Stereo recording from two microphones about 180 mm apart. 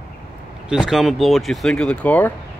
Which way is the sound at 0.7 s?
Centre (ahead or behind).